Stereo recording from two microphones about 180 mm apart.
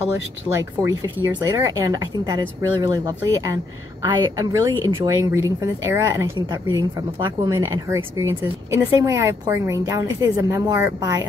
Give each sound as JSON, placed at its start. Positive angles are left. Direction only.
{"t": 0.6, "sound": "speech", "side_deg": -20}